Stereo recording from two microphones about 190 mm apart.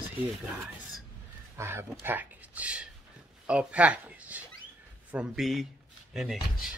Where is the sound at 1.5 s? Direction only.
10° right (ahead or behind).